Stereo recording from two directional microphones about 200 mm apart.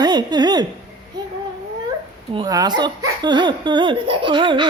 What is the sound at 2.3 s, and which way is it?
Speech, 20° right (ahead or behind).